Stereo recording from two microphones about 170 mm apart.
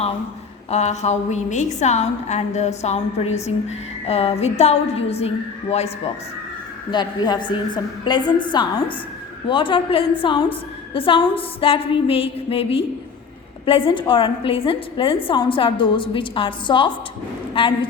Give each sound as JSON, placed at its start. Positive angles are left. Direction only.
{"t": 0.7, "sound": "a woman's voice", "side_deg": 40}
{"t": 6.9, "sound": "a woman's voice", "side_deg": 25}